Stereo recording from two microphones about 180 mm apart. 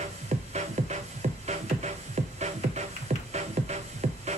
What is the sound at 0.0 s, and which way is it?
Music, 40° right (ahead or behind).